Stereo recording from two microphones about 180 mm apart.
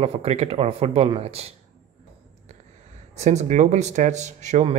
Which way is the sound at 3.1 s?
40° right (ahead or behind).